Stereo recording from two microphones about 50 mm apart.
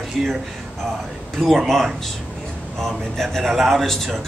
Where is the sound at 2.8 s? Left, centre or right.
Centre.